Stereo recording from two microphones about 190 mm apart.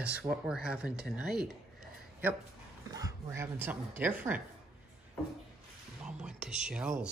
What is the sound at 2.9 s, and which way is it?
A woman's voice, 20° right (ahead or behind).